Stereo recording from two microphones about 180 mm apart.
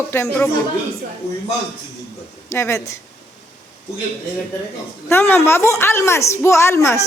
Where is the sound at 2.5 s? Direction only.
15° left (ahead or behind).